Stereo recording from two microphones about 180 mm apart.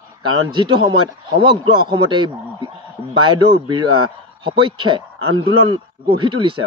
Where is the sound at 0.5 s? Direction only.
25° right (ahead or behind).